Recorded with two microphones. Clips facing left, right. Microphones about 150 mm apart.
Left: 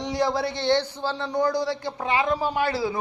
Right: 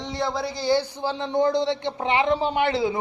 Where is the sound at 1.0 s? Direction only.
15° right (ahead or behind).